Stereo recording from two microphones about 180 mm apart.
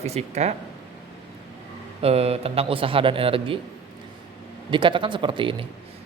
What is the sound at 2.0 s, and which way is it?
Speech, 35° right (ahead or behind).